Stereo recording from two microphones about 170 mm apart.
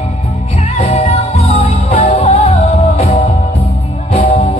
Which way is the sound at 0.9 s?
40° left (ahead or behind).